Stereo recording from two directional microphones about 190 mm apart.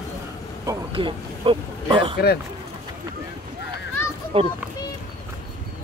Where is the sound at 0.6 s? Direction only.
25° right (ahead or behind).